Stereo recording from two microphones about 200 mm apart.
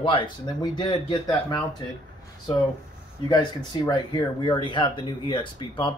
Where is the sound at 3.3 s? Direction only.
20° left (ahead or behind).